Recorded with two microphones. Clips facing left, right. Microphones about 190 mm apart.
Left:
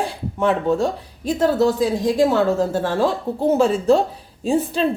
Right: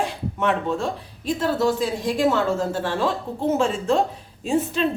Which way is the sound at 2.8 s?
40° left (ahead or behind).